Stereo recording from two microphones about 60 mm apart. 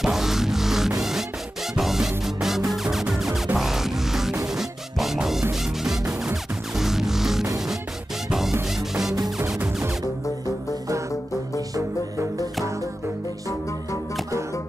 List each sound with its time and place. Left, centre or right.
0.0 s music: centre